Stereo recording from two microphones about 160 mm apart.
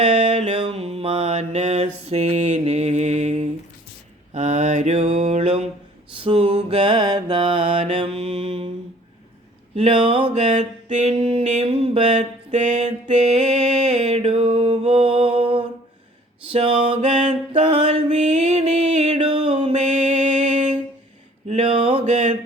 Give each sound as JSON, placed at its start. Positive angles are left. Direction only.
{"t": 0.0, "sound": "mantra", "side_deg": -40}
{"t": 9.7, "sound": "a sound", "side_deg": -35}
{"t": 14.0, "sound": "mantra", "side_deg": -40}
{"t": 16.5, "sound": "a sound", "side_deg": -35}
{"t": 17.5, "sound": "music", "side_deg": -40}
{"t": 19.7, "sound": "mantra", "side_deg": -50}
{"t": 21.4, "sound": "mantra", "side_deg": -40}